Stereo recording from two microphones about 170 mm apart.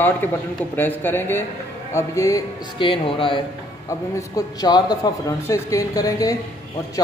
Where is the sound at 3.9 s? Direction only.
20° left (ahead or behind).